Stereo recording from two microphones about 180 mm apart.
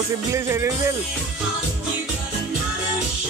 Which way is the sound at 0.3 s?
15° right (ahead or behind).